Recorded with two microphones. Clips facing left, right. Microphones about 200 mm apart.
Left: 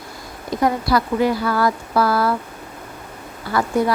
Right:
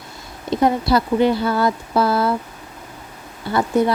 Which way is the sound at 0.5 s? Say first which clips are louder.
Right 2 dB; 25° right (ahead or behind).